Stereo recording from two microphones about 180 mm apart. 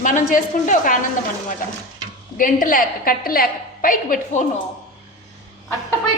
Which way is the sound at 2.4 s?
50° left (ahead or behind).